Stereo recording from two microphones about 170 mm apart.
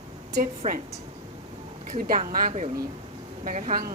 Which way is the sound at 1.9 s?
55° right (ahead or behind).